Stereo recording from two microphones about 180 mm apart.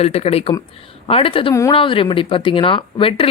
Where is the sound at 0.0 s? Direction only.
35° left (ahead or behind).